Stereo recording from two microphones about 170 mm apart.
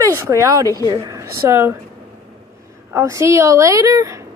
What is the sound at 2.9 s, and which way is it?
A woman's voice, 15° right (ahead or behind).